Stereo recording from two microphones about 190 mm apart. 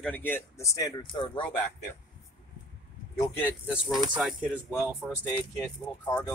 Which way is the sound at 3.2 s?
10° left (ahead or behind).